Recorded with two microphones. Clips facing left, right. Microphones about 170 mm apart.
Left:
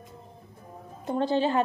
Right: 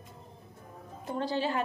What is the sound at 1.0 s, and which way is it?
Speech, 25° left (ahead or behind).